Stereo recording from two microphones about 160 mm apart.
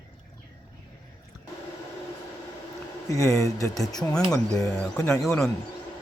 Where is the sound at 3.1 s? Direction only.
20° left (ahead or behind).